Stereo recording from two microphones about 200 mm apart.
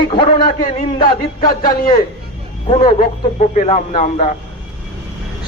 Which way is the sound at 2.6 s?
30° left (ahead or behind).